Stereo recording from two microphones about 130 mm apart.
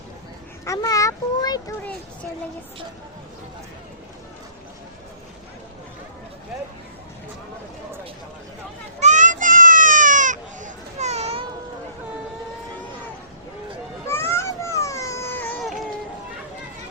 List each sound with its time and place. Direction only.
0.6 s a child's voice: 25° left (ahead or behind)
9.0 s a sound: 70° right (ahead or behind)
14.1 s baby cry: 20° left (ahead or behind)